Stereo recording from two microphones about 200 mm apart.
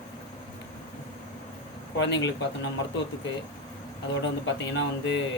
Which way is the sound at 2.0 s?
60° left (ahead or behind).